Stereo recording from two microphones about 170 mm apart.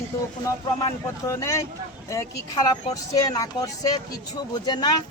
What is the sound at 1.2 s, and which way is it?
Speech, 20° left (ahead or behind).